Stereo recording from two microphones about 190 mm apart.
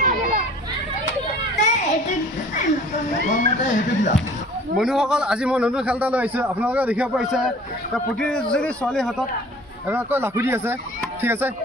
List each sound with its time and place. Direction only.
0.0 s children playing: 45° right (ahead or behind)
1.6 s a sound: 40° left (ahead or behind)
3.6 s speech: 40° left (ahead or behind)
4.7 s a man's voice: 5° right (ahead or behind)
9.8 s speech: 10° right (ahead or behind)